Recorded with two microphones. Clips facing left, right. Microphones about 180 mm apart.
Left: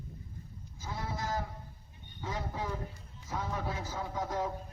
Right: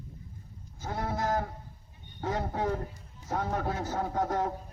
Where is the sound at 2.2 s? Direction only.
60° right (ahead or behind).